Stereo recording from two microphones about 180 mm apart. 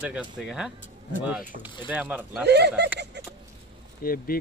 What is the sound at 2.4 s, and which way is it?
Speech, 70° right (ahead or behind).